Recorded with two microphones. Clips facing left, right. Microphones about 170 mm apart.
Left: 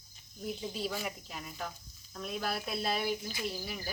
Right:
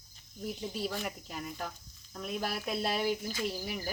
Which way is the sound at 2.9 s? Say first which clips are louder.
Right 3 dB; 10° left (ahead or behind).